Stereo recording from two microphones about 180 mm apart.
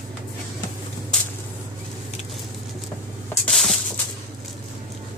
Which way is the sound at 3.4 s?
Centre (ahead or behind).